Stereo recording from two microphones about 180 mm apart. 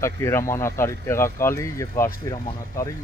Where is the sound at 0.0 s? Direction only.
15° left (ahead or behind).